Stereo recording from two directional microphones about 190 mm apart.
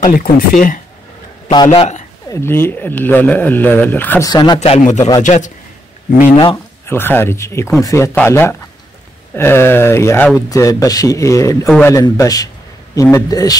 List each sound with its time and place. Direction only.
0.0 s speech: 45° left (ahead or behind)
1.5 s a man's voice: 25° left (ahead or behind)
2.2 s speech: 15° left (ahead or behind)
4.3 s speech: 20° left (ahead or behind)
4.6 s a man's voice: 40° left (ahead or behind)
6.4 s speech: 15° left (ahead or behind)